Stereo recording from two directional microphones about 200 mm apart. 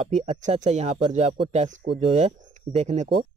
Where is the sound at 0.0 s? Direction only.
30° right (ahead or behind).